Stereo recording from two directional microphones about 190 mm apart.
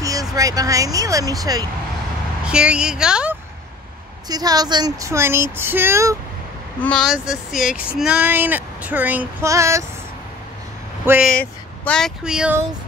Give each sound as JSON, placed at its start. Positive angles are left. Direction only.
{"t": 0.0, "sound": "speech", "side_deg": -20}
{"t": 2.4, "sound": "a woman's voice", "side_deg": -5}
{"t": 4.3, "sound": "speech", "side_deg": -20}
{"t": 6.8, "sound": "speech", "side_deg": 5}
{"t": 11.1, "sound": "speech", "side_deg": -5}
{"t": 11.3, "sound": "speech", "side_deg": 5}